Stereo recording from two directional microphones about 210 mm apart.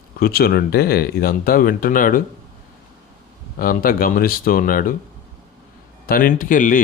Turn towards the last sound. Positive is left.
turn(degrees=40)  # may be behind; listen again after turning